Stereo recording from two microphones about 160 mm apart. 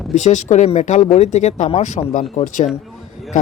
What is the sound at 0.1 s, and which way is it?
Speech, 50° left (ahead or behind).